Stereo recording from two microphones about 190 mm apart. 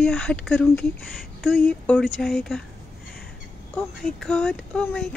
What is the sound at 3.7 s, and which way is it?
Speech, 5° left (ahead or behind).